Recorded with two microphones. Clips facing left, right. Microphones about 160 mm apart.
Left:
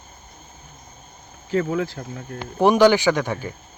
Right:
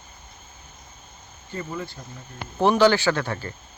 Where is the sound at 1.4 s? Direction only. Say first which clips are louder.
Left 10 dB; 90° left; by 2.4 s 75° left (ahead or behind).